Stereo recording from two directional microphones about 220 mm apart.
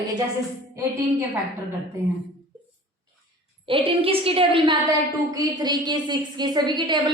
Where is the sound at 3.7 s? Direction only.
25° right (ahead or behind).